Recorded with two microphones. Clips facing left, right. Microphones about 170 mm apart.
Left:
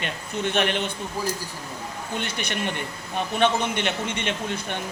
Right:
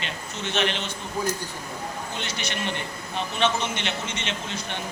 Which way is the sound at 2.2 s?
55° left (ahead or behind).